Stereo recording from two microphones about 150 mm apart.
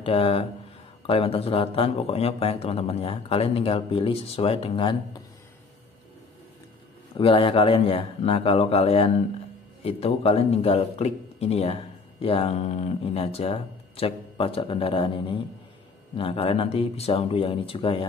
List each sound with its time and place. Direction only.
0.0 s a man's voice: 40° left (ahead or behind)
7.2 s a man's voice: 35° left (ahead or behind)